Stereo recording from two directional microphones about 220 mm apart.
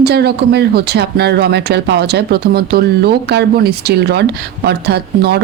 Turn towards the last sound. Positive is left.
turn(degrees=-45)  # may be behind; listen again after turning